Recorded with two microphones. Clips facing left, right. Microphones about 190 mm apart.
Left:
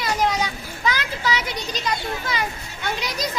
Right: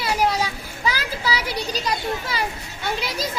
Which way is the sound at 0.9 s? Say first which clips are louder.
Left 1 dB; 35° right (ahead or behind).